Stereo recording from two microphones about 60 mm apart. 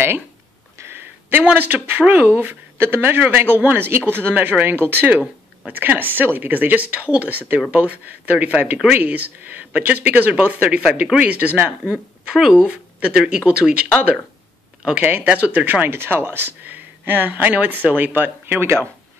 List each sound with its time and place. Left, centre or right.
0.7 s a sound: right
1.4 s speech: right
12.4 s speech: centre
15.0 s speech: right